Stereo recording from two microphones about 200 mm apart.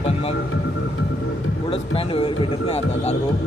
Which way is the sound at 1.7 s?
25° left (ahead or behind).